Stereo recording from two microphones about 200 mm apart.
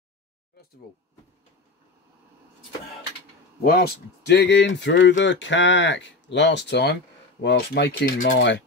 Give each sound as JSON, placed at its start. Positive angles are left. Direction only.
{"t": 3.6, "sound": "speech", "side_deg": 50}
{"t": 8.4, "sound": "speech", "side_deg": 65}